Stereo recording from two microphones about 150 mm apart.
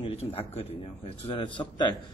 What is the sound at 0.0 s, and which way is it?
A man's voice, 40° left (ahead or behind).